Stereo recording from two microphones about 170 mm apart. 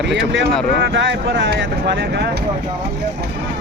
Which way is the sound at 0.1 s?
90° right.